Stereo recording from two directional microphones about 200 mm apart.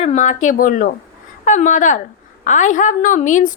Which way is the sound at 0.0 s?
35° left (ahead or behind).